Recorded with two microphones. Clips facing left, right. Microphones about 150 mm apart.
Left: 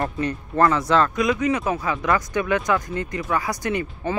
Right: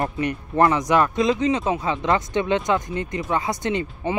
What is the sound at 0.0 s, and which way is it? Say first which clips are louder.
Speech: right 1 dB; 20° right (ahead or behind).